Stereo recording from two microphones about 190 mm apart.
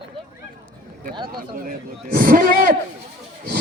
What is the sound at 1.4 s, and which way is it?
A man's voice, 45° right (ahead or behind).